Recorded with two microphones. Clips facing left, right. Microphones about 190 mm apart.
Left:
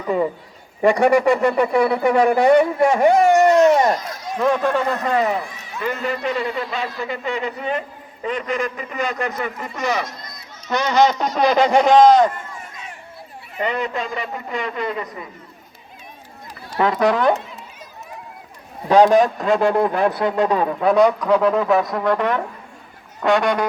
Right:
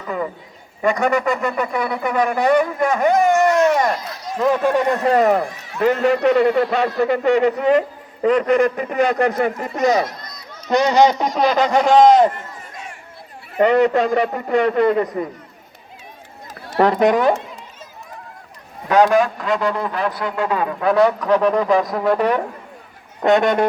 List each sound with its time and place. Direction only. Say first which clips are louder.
0.8 s speech: left 3 dB; 30° left (ahead or behind)
4.4 s a sound: right 1 dB; 5° right (ahead or behind)
4.7 s a man's voice: right 3 dB; 15° right (ahead or behind)
5.0 s a man's voice: right 5 dB; 45° right (ahead or behind); by 7.9 s 85° right
8.4 s speech: right 8 dB; 55° right (ahead or behind)
10.8 s a man's voice: right 1 dB; 15° right (ahead or behind)
11.4 s a man's voice: left 1 dB; 15° left (ahead or behind)
11.9 s speech: right 1 dB; 20° right (ahead or behind)
13.6 s a man's voice: right 9 dB; 65° right (ahead or behind)
15.0 s a man's voice: right 10 dB; 40° right (ahead or behind)
17.0 s speech: right 1 dB; 20° right (ahead or behind)
18.9 s a man's voice: left 2 dB; 35° left (ahead or behind)
20.9 s a man's voice: even; 15° left (ahead or behind)
21.5 s a sound: right 1 dB; 5° left (ahead or behind)